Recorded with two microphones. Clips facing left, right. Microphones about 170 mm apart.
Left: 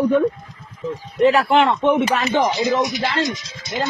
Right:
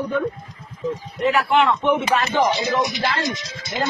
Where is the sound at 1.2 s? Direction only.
35° left (ahead or behind).